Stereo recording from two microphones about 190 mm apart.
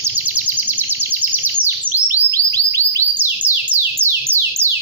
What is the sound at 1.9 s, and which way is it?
Chirp tone, 15° right (ahead or behind).